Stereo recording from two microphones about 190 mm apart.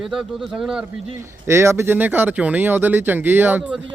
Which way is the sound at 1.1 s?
15° right (ahead or behind).